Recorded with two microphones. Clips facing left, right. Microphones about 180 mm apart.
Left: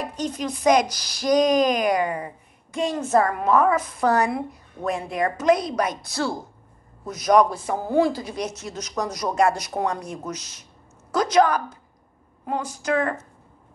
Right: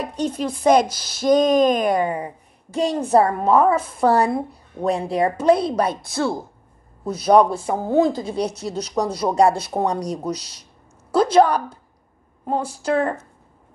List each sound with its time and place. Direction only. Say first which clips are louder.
0.3 s a woman's voice: right 3 dB; 30° right (ahead or behind)